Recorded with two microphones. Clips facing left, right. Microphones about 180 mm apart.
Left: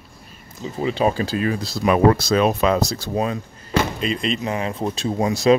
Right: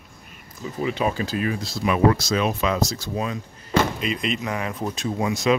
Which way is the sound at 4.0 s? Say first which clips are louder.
Left 3 dB; 30° left (ahead or behind).